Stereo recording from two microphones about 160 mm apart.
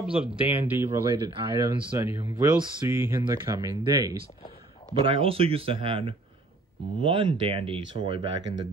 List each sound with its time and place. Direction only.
0.0 s speech: 5° right (ahead or behind); by 4.2 s 20° right (ahead or behind)
4.9 s speech: 35° right (ahead or behind)